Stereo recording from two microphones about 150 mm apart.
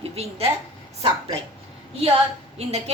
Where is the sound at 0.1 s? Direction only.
45° right (ahead or behind).